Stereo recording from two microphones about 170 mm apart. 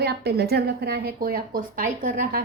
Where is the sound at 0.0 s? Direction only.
70° right (ahead or behind).